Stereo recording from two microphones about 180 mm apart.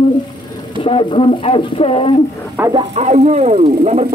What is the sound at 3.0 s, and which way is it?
Speech, 40° right (ahead or behind).